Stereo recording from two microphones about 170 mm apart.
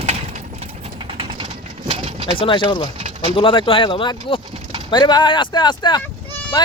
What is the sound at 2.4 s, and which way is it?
Speech, 30° left (ahead or behind).